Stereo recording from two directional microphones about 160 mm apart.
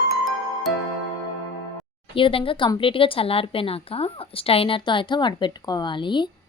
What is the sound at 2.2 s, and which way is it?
Speech, 35° left (ahead or behind).